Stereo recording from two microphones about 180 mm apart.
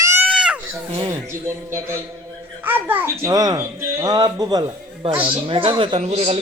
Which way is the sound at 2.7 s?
10° right (ahead or behind).